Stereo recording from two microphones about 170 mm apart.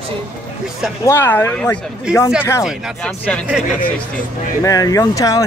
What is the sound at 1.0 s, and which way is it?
Speech, 15° left (ahead or behind).